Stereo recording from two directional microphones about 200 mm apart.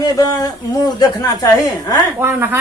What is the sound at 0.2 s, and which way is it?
A woman's voice, 20° left (ahead or behind).